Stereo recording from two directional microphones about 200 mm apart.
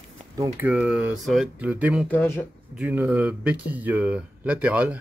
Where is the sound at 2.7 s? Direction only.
5° right (ahead or behind).